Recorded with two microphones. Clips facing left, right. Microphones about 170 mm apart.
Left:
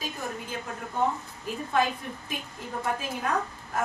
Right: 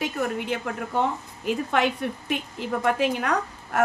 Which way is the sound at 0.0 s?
70° right (ahead or behind).